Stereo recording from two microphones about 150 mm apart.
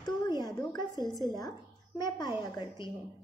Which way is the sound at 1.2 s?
25° left (ahead or behind).